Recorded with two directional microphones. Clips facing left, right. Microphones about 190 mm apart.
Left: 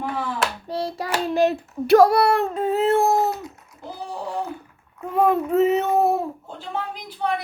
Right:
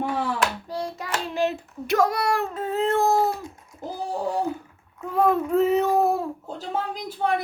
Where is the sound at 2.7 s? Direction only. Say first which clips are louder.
Left 3 dB; 15° left (ahead or behind).